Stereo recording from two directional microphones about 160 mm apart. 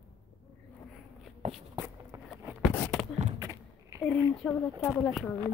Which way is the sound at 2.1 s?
25° right (ahead or behind).